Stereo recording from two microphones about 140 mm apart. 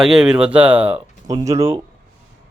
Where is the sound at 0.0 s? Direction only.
5° right (ahead or behind).